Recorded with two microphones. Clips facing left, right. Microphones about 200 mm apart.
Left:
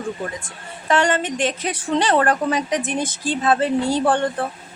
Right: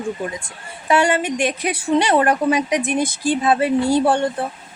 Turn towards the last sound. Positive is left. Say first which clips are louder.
# right 2 dB
turn(degrees=-10)  # may be behind; listen again after turning